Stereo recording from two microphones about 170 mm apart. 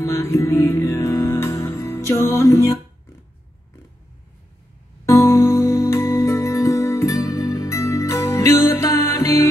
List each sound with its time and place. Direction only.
0.0 s music: 15° left (ahead or behind)
5.0 s music: 15° left (ahead or behind)